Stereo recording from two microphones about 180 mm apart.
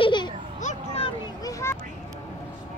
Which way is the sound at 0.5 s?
40° left (ahead or behind).